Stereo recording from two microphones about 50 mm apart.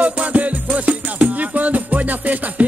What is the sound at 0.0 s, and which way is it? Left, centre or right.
Music, right.